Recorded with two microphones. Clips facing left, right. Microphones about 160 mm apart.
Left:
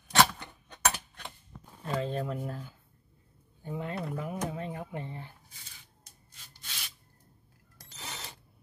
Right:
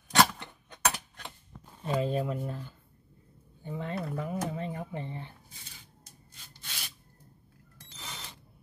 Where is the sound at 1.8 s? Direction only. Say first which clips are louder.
Right 3 dB; 10° right (ahead or behind); by 4.0 s 5° left (ahead or behind).